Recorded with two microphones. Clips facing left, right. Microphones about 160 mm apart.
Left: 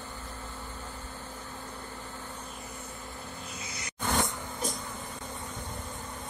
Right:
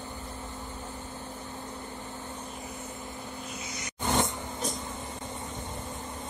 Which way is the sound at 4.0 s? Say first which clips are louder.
Right 2 dB; 25° right (ahead or behind).